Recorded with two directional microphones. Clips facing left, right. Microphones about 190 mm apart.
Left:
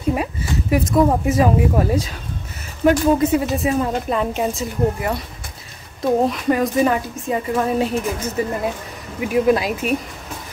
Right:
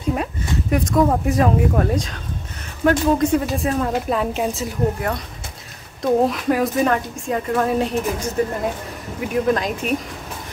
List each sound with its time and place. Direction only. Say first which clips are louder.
0.1 s a woman's voice: left 1 dB; 5° left (ahead or behind)
6.2 s a woman's voice: even; centre (ahead or behind)